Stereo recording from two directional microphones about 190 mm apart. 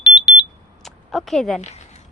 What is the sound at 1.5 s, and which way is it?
Speech, 35° left (ahead or behind).